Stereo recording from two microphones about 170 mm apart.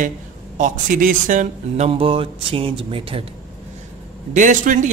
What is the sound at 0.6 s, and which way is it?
A man's voice, 50° right (ahead or behind).